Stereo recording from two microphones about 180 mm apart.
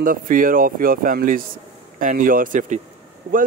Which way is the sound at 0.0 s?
50° right (ahead or behind).